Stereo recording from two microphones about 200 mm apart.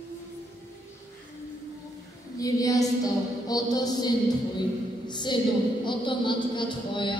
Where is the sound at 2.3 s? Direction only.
15° left (ahead or behind).